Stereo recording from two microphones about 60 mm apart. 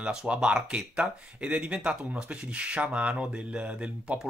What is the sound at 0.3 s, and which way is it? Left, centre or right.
Speech, centre.